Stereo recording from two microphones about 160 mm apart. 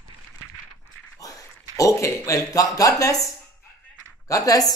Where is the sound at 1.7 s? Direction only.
20° left (ahead or behind).